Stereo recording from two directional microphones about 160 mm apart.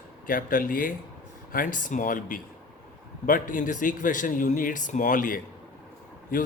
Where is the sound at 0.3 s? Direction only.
60° left (ahead or behind).